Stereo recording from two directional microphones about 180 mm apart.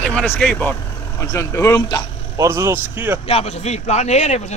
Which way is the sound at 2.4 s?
15° right (ahead or behind).